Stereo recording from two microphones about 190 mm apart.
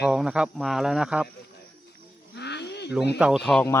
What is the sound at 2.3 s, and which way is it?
Snake, 65° left (ahead or behind).